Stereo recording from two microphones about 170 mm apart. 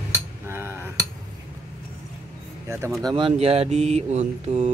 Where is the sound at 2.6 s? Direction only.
15° right (ahead or behind).